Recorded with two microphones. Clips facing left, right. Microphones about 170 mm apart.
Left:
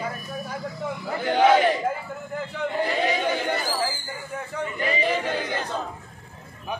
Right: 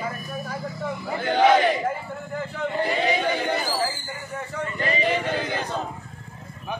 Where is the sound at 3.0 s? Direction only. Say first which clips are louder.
Right 1 dB; 5° left (ahead or behind).